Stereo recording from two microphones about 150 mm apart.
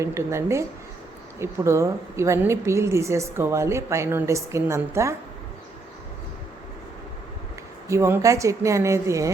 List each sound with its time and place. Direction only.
0.0 s a woman's voice: 20° right (ahead or behind)
7.9 s a woman's voice: 15° right (ahead or behind)